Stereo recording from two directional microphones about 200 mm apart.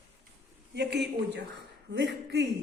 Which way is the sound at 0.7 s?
60° right (ahead or behind).